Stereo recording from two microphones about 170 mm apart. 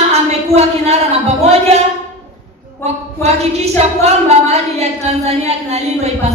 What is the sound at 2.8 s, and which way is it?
A woman's voice, 40° right (ahead or behind).